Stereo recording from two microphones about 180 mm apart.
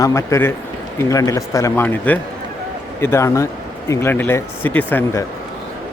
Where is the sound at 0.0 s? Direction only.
15° left (ahead or behind).